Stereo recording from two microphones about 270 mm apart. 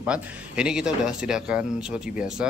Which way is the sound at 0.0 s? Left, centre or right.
Centre.